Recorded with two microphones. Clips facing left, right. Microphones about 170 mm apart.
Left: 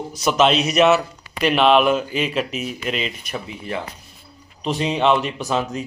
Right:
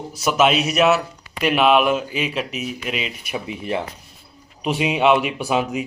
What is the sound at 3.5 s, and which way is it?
Speech, 20° right (ahead or behind).